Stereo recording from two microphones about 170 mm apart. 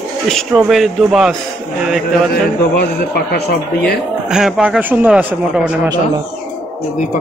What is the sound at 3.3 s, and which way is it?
Speech, 65° left (ahead or behind).